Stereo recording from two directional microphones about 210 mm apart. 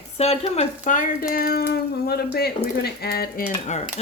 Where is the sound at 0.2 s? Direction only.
30° left (ahead or behind).